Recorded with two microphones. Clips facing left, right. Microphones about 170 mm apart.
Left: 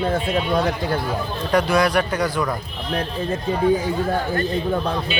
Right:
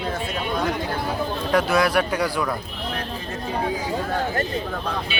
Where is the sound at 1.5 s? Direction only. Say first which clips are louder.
Left 2 dB; 5° right (ahead or behind).